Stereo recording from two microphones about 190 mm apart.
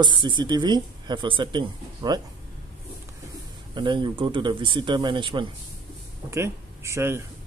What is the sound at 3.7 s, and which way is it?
Speech, 25° right (ahead or behind).